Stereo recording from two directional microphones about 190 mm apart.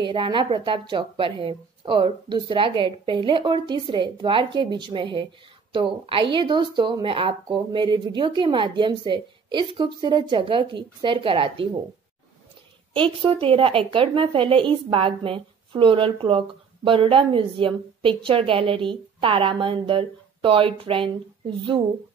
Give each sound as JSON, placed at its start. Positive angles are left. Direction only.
{"t": 0.0, "sound": "a woman's voice", "side_deg": -25}
{"t": 12.9, "sound": "a woman's voice", "side_deg": -25}